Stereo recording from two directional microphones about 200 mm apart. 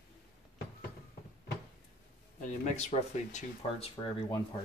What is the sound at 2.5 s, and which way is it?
Speech, 35° left (ahead or behind).